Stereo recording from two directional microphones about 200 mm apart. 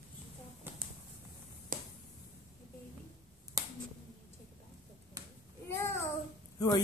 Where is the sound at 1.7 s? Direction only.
45° right (ahead or behind).